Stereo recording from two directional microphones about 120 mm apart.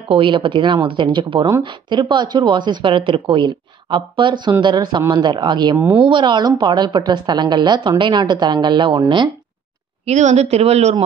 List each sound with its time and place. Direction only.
0.1 s speech: 45° right (ahead or behind)
10.0 s speech: 65° right (ahead or behind)